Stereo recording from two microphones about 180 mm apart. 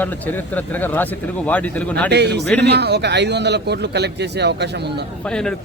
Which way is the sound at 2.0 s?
70° right (ahead or behind).